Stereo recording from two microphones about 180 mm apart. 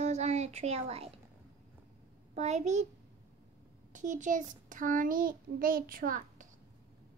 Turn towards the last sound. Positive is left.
turn(degrees=-50)  # may be behind; listen again after turning